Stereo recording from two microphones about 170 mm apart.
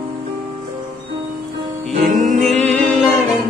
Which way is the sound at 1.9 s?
45° right (ahead or behind).